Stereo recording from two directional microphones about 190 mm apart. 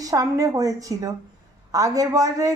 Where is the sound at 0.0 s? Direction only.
20° right (ahead or behind).